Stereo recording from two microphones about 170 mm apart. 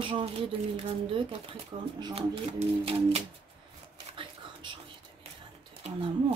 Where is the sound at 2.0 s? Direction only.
35° right (ahead or behind).